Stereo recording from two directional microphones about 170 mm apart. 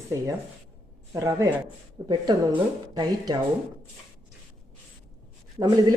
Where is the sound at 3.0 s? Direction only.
25° right (ahead or behind).